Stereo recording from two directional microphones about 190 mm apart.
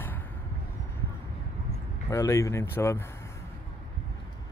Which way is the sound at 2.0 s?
15° left (ahead or behind).